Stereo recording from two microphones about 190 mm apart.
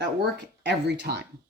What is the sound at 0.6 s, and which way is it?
Speech, 65° right (ahead or behind).